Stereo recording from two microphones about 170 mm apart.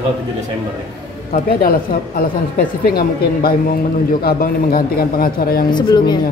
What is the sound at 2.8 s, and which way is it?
A man's voice, 65° left (ahead or behind).